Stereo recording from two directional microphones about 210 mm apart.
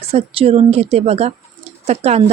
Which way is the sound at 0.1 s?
30° right (ahead or behind).